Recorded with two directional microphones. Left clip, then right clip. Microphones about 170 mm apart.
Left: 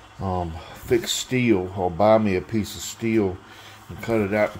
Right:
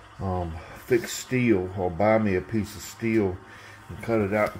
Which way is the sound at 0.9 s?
20° left (ahead or behind).